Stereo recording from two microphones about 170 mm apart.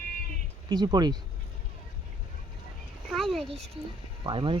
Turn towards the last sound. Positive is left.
turn(degrees=-30)  # may be behind; listen again after turning